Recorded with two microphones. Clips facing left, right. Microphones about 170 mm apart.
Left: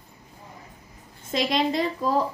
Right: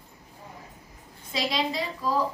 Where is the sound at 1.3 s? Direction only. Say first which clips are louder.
Left 5 dB; 50° left (ahead or behind).